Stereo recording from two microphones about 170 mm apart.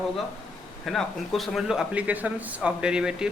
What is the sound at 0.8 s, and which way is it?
Speech, centre (ahead or behind).